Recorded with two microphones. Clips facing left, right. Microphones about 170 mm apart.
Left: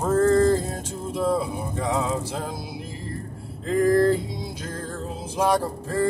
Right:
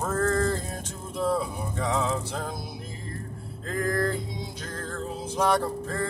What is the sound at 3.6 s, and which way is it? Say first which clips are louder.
Speech: left 9 dB; 20° left (ahead or behind).